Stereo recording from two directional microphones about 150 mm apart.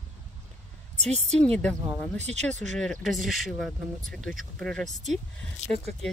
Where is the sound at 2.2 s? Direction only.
50° right (ahead or behind).